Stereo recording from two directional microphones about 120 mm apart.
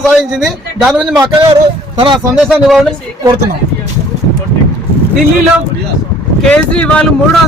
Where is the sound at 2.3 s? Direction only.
5° right (ahead or behind).